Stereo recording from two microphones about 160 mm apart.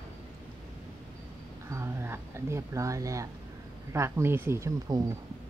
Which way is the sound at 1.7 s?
15° right (ahead or behind).